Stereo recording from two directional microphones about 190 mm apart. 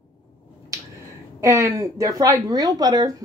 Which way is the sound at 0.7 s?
15° right (ahead or behind).